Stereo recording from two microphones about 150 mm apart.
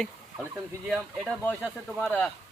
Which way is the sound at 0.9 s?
5° right (ahead or behind).